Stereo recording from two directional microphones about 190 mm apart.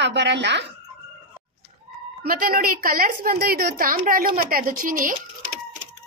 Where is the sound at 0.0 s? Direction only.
65° right (ahead or behind).